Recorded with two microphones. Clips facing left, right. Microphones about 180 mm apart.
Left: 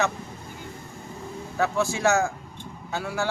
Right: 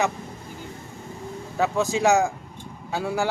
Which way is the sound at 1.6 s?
15° right (ahead or behind).